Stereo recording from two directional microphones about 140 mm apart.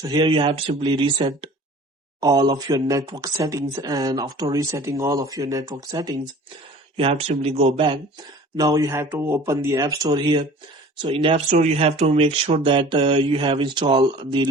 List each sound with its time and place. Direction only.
0.0 s speech: 35° right (ahead or behind)
6.9 s speech: 45° right (ahead or behind)
8.5 s speech: 25° right (ahead or behind)
11.3 s speech: 55° right (ahead or behind); by 14.4 s 30° right (ahead or behind)